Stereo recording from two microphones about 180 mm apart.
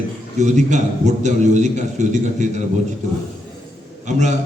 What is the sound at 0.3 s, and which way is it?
A man's voice, 40° right (ahead or behind).